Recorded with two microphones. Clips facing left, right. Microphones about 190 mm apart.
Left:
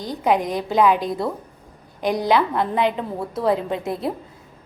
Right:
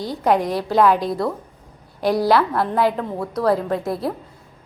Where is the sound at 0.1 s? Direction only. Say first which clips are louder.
Right 1 dB; centre (ahead or behind).